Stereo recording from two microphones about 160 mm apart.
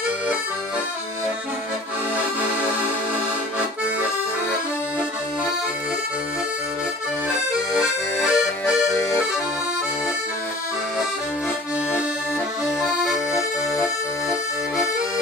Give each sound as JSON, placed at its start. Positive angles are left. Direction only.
{"t": 7.7, "sound": "accordion", "side_deg": -5}
{"t": 12.6, "sound": "accordion", "side_deg": 0}